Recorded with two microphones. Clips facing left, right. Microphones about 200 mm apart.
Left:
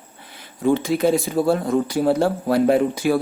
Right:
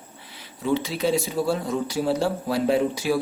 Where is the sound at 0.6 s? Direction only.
50° left (ahead or behind).